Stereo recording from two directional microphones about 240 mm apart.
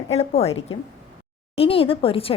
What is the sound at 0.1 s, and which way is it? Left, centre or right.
A woman's voice, left.